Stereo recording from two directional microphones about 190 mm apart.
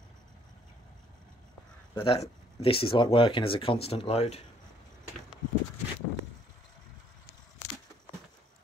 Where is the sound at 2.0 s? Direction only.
30° left (ahead or behind).